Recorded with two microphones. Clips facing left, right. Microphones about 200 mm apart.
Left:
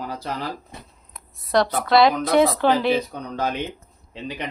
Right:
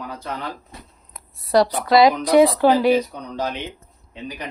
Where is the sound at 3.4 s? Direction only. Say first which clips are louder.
Left 1 dB; 50° left (ahead or behind).